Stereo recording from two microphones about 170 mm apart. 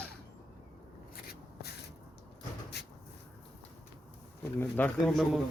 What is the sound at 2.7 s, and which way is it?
Cupboard open or close, 80° left.